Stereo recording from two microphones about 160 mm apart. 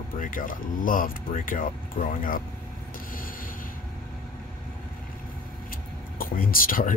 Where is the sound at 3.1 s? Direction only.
60° left (ahead or behind).